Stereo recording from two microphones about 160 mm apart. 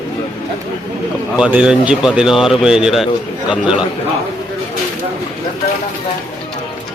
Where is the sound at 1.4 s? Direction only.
5° right (ahead or behind).